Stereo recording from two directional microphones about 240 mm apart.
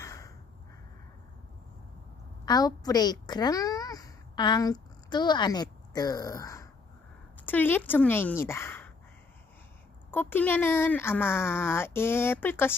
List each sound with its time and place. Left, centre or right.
0.0 s a sound: centre
2.4 s a woman's voice: centre
10.1 s speech: centre